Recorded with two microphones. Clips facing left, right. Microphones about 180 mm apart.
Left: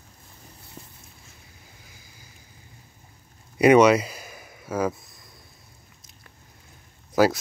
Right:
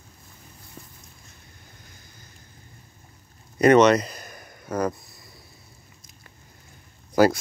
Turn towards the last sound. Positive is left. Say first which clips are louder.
# right 2 dB
turn(degrees=0)  # may be behind; listen again after turning